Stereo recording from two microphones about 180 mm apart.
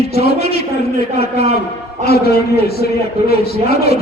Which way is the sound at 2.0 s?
60° left (ahead or behind).